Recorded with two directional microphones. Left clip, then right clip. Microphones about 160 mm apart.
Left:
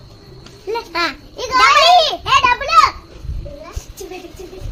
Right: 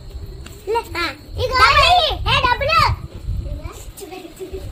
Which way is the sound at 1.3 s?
50° left (ahead or behind).